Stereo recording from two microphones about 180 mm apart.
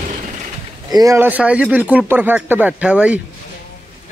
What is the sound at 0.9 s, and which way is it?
A man's voice, 20° right (ahead or behind).